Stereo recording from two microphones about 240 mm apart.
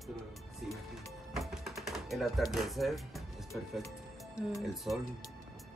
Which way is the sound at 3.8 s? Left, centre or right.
Centre.